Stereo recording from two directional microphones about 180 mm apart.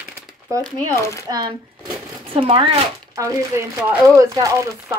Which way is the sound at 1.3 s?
25° right (ahead or behind).